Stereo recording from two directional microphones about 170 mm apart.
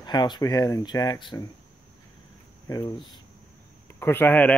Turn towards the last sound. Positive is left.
turn(degrees=10)  # may be behind; listen again after turning